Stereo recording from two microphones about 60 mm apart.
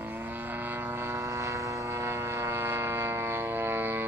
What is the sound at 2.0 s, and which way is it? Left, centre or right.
Vehicle, right.